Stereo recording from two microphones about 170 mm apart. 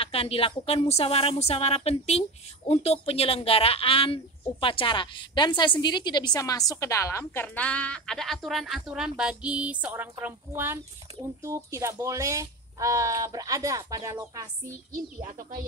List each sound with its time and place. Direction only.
0.0 s a woman's voice: 35° left (ahead or behind); by 14.5 s 20° right (ahead or behind)